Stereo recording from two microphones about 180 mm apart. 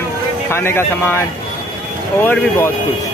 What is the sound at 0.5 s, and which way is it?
Speech, 15° left (ahead or behind).